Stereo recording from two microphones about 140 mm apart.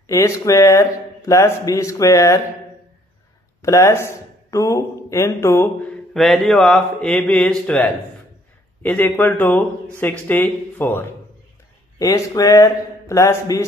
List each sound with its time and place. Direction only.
0.1 s speech: 20° left (ahead or behind)
3.6 s a man's voice: 20° left (ahead or behind)
12.0 s speech: 25° left (ahead or behind)